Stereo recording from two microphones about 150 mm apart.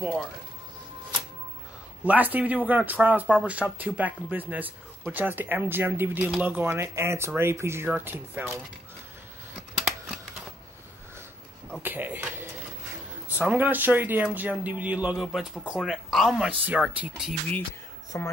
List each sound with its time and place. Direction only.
2.0 s speech: 10° right (ahead or behind)
11.8 s speech: 15° right (ahead or behind)
18.1 s speech: 20° left (ahead or behind)